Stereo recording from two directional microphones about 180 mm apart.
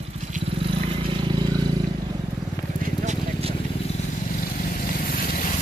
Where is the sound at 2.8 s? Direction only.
35° right (ahead or behind).